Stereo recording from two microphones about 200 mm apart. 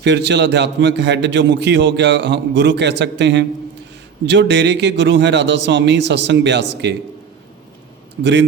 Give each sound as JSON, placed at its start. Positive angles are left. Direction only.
{"t": 0.0, "sound": "a man's voice", "side_deg": -60}
{"t": 8.2, "sound": "a man's voice", "side_deg": -60}